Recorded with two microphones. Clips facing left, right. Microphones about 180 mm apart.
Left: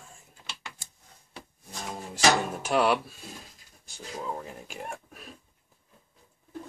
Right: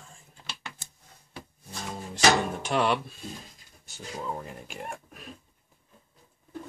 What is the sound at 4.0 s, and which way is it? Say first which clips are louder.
Speech: even; centre (ahead or behind).